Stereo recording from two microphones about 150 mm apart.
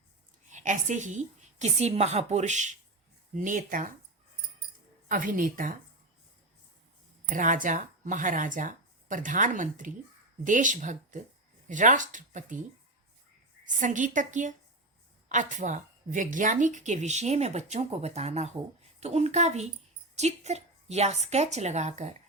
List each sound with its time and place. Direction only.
0.5 s speech: 55° right (ahead or behind)
5.1 s speech: 65° right (ahead or behind)
7.3 s speech: 60° right (ahead or behind)
13.7 s speech: 55° right (ahead or behind)